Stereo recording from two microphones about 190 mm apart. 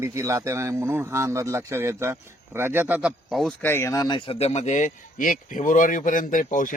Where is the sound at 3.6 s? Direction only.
10° left (ahead or behind); by 6.8 s 45° left (ahead or behind).